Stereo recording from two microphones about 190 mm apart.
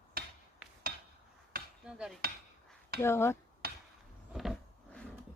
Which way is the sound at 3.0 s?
15° left (ahead or behind).